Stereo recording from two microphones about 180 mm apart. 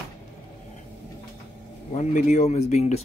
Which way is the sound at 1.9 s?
40° left (ahead or behind).